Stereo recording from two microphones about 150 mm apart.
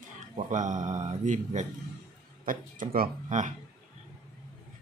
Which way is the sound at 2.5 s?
70° right (ahead or behind).